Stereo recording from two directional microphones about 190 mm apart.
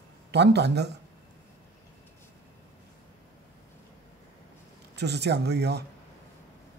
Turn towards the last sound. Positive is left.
turn(degrees=-60)  # may be behind; listen again after turning